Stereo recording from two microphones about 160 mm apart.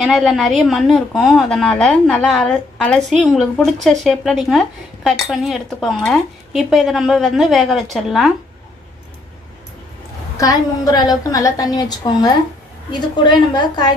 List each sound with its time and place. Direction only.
0.0 s speech: centre (ahead or behind)
10.3 s a woman's voice: 20° left (ahead or behind)